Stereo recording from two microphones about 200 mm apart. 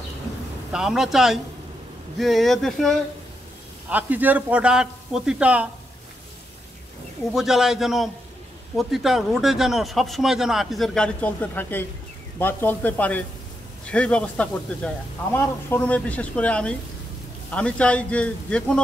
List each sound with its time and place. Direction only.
0.7 s a man's voice: 5° right (ahead or behind)
7.3 s speech: centre (ahead or behind)